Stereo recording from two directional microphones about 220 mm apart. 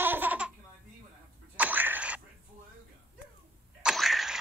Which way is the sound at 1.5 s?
5° right (ahead or behind).